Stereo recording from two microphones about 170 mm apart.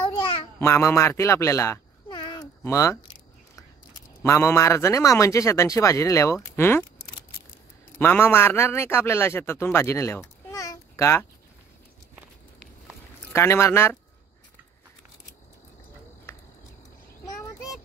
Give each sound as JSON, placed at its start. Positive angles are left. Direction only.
{"t": 0.6, "sound": "a man's voice", "side_deg": 15}
{"t": 2.0, "sound": "a sound", "side_deg": 25}
{"t": 2.6, "sound": "a man's voice", "side_deg": 15}
{"t": 4.2, "sound": "a man's voice", "side_deg": 15}
{"t": 8.0, "sound": "a man's voice", "side_deg": 10}
{"t": 12.2, "sound": "walk", "side_deg": -5}
{"t": 13.3, "sound": "a man's voice", "side_deg": 15}